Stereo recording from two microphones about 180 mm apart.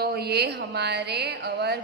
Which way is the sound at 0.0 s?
60° right (ahead or behind).